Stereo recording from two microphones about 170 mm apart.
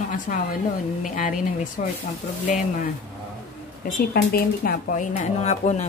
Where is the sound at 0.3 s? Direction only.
50° left (ahead or behind).